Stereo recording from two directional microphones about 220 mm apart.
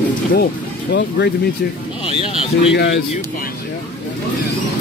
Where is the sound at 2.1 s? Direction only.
25° left (ahead or behind).